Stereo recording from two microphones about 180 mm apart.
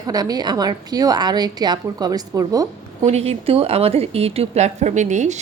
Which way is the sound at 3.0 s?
35° right (ahead or behind).